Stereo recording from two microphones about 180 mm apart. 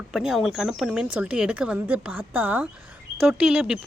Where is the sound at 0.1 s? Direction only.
Centre (ahead or behind).